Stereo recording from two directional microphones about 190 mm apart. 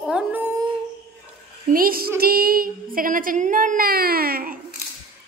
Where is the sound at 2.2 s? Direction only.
50° right (ahead or behind).